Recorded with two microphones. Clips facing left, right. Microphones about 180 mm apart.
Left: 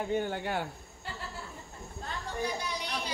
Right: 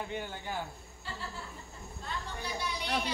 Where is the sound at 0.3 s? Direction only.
75° left (ahead or behind).